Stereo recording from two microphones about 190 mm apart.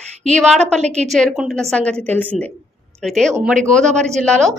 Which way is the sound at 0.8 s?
35° right (ahead or behind).